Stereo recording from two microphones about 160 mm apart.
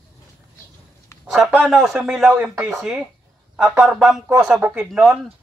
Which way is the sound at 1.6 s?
Centre (ahead or behind).